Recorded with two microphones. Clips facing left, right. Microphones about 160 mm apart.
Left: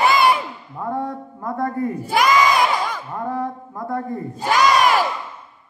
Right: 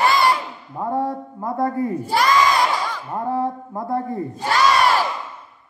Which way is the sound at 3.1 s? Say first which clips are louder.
Right 4 dB; 25° right (ahead or behind).